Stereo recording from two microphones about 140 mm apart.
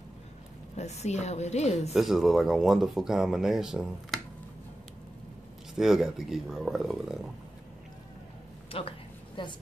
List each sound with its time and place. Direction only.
0.7 s a woman's voice: 50° left (ahead or behind)
2.0 s speech: centre (ahead or behind)
5.8 s speech: 5° right (ahead or behind)
8.7 s a woman's voice: 40° left (ahead or behind)